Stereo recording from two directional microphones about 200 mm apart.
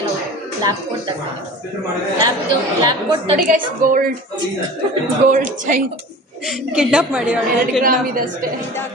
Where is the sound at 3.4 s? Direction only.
45° right (ahead or behind).